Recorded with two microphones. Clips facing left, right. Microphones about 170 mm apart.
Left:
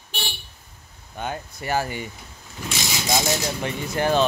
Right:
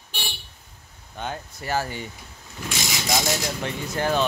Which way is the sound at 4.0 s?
15° left (ahead or behind).